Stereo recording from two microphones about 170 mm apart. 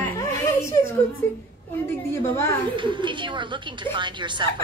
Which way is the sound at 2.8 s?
30° right (ahead or behind).